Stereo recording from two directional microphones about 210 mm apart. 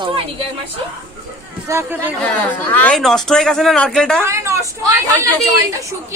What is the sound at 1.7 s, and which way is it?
Speech, 10° right (ahead or behind).